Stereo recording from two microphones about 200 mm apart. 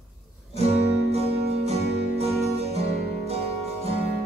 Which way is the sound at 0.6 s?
30° right (ahead or behind).